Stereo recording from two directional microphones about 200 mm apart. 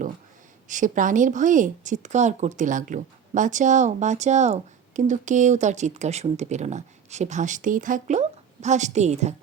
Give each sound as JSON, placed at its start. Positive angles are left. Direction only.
{"t": 0.7, "sound": "a woman's voice", "side_deg": -40}